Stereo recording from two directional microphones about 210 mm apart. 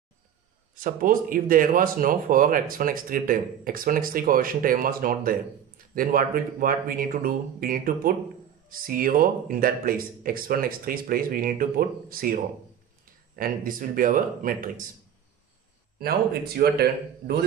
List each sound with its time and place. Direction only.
0.7 s speech: 40° right (ahead or behind)
13.4 s speech: 40° right (ahead or behind)
16.0 s speech: 45° right (ahead or behind)